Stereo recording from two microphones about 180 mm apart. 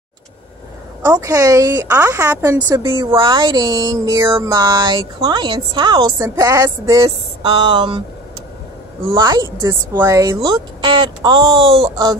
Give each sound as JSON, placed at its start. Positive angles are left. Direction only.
{"t": 1.0, "sound": "a woman's voice", "side_deg": -15}
{"t": 2.9, "sound": "speech", "side_deg": -25}
{"t": 9.1, "sound": "speech", "side_deg": -25}